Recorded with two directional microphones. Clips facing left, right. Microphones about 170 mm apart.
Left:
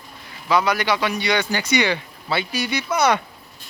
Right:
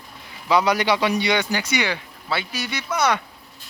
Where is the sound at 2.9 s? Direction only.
20° left (ahead or behind).